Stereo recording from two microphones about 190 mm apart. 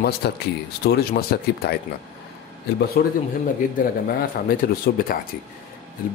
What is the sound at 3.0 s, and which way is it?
Speech, 55° left (ahead or behind).